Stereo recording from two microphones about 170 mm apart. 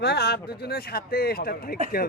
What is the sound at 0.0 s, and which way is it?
Speech, 70° left (ahead or behind).